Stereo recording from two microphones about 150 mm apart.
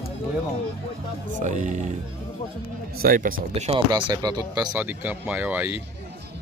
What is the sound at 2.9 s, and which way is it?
Speech, 70° right (ahead or behind).